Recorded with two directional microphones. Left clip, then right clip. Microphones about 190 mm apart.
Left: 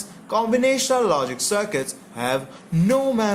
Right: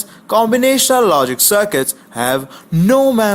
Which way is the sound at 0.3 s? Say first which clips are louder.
Right 7 dB; 40° right (ahead or behind).